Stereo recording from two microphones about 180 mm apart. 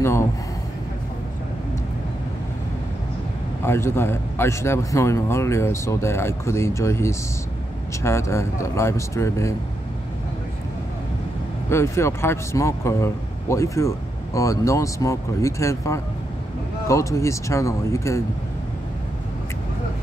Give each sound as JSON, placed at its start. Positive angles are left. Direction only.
{"t": 3.6, "sound": "speech", "side_deg": 15}
{"t": 11.7, "sound": "speech", "side_deg": 15}